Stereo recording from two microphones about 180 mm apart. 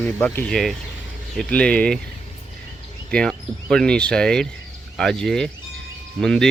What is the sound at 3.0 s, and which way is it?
Speech, 5° left (ahead or behind).